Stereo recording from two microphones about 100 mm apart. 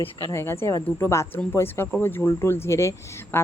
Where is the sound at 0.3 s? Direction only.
25° left (ahead or behind).